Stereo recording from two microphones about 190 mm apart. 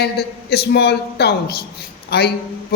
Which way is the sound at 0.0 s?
60° left (ahead or behind).